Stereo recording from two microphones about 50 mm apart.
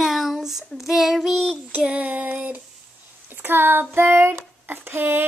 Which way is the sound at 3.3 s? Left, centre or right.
Right.